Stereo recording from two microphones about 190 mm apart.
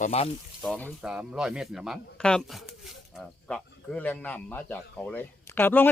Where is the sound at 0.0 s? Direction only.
35° left (ahead or behind).